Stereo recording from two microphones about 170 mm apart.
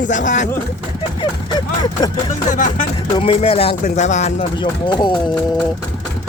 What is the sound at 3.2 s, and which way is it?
Speech, 35° left (ahead or behind).